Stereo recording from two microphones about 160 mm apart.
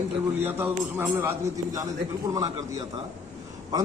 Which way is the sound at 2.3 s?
20° right (ahead or behind).